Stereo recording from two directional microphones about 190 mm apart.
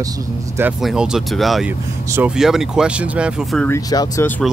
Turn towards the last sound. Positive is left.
turn(degrees=15)  # may be behind; listen again after turning